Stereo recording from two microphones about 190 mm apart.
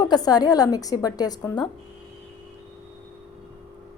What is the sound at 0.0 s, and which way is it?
Speech, 20° left (ahead or behind).